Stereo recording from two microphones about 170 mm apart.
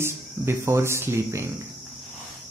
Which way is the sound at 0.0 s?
15° right (ahead or behind).